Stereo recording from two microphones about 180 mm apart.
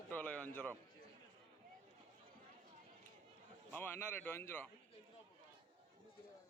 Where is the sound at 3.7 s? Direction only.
10° left (ahead or behind).